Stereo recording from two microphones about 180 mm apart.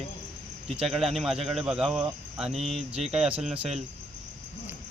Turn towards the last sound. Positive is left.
turn(degrees=-5)  # may be behind; listen again after turning